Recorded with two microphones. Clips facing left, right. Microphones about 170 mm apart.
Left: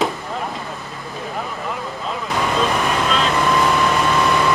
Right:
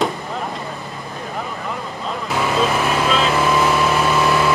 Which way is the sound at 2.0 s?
5° right (ahead or behind).